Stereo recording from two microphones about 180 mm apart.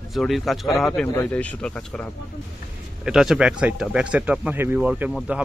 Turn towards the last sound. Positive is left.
turn(degrees=-5)  # may be behind; listen again after turning